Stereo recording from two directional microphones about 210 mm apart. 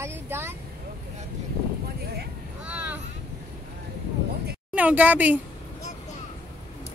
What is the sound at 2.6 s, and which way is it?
Vehicle, 5° right (ahead or behind).